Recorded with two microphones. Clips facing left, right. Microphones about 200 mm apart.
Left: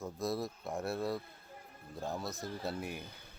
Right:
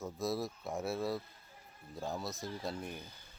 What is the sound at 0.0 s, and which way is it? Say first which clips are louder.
Speech: even; centre (ahead or behind).